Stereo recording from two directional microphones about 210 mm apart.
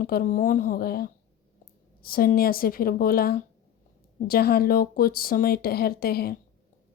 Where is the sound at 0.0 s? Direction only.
45° left (ahead or behind).